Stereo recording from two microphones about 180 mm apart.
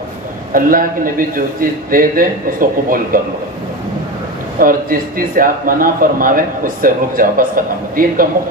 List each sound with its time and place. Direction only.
0.5 s speech: 50° right (ahead or behind)
4.6 s speech: 50° right (ahead or behind)